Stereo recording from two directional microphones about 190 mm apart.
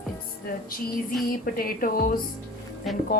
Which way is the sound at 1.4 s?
50° left (ahead or behind).